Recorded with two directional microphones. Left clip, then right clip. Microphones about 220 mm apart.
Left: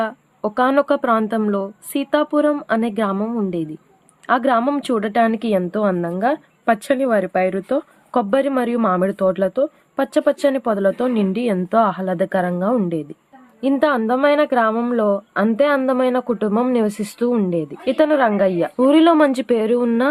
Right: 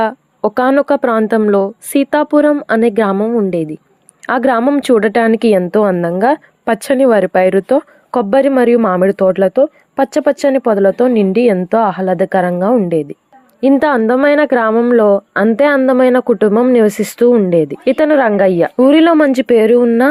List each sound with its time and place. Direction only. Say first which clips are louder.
0.0 s a woman's voice: right 8 dB; 30° right (ahead or behind)